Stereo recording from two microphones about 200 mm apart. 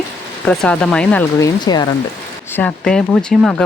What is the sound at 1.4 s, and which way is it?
Speech, 20° left (ahead or behind).